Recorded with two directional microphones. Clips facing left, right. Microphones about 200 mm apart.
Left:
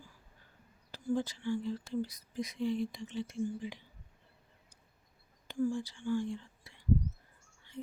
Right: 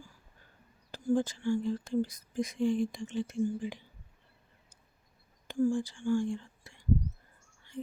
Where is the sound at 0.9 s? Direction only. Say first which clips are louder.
Right 5 dB; 50° right (ahead or behind).